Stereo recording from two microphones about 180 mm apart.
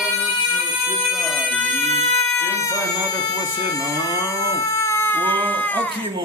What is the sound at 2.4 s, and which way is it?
Cat, 15° left (ahead or behind).